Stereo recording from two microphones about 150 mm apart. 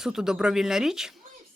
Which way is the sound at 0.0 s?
5° right (ahead or behind).